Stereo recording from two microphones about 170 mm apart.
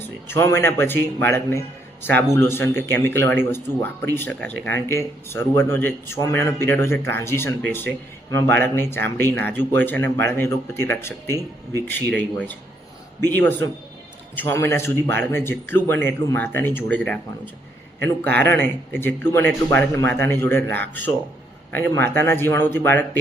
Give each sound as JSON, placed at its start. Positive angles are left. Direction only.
{"t": 0.3, "sound": "a man's voice", "side_deg": 15}